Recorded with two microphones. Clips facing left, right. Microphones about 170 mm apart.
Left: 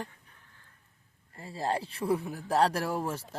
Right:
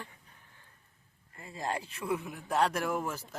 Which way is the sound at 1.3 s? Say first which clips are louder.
Left 4 dB; 35° left (ahead or behind).